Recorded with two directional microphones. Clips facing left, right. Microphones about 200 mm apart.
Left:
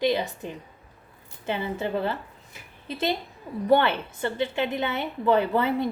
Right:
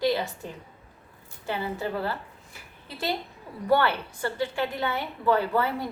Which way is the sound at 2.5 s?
20° left (ahead or behind).